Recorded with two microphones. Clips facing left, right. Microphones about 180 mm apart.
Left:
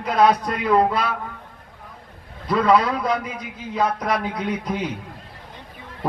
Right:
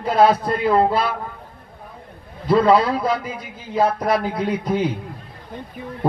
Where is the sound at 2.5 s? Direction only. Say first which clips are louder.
Right 3 dB; 25° right (ahead or behind).